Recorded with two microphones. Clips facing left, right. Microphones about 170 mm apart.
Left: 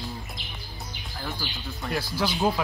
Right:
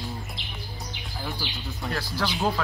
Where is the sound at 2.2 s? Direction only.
Centre (ahead or behind).